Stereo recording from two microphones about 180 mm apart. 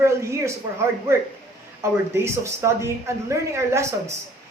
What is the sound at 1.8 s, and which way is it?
Speech, 15° right (ahead or behind).